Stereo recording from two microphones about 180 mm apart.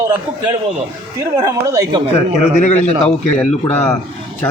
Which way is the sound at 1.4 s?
20° right (ahead or behind).